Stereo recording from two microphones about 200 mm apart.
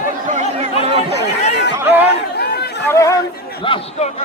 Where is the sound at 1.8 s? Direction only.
10° right (ahead or behind).